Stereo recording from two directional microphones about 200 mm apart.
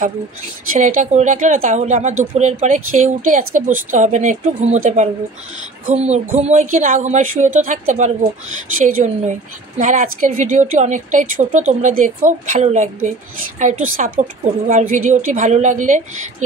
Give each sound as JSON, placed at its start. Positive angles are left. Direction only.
{"t": 0.7, "sound": "speech", "side_deg": -40}